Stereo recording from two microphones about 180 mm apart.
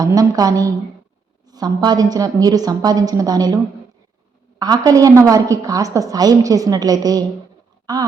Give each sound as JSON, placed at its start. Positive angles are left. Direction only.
{"t": 0.0, "sound": "a woman's voice", "side_deg": -20}
{"t": 4.6, "sound": "a woman's voice", "side_deg": -20}